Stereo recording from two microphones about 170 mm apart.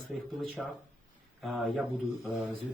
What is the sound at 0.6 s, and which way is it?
Speech, centre (ahead or behind).